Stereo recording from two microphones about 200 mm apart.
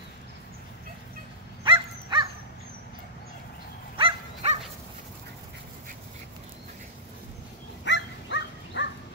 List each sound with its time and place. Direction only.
1.6 s dog: 25° right (ahead or behind)
3.9 s dog: 25° right (ahead or behind)
7.8 s dog: 60° left (ahead or behind)